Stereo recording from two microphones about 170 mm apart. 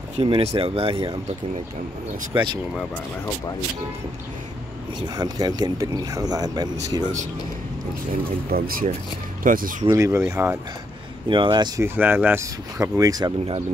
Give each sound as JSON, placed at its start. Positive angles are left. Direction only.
{"t": 0.2, "sound": "speech", "side_deg": -35}
{"t": 2.3, "sound": "speech", "side_deg": -25}
{"t": 5.0, "sound": "speech", "side_deg": -25}
{"t": 8.5, "sound": "speech", "side_deg": -60}
{"t": 9.8, "sound": "speech", "side_deg": -15}
{"t": 11.2, "sound": "speech", "side_deg": -30}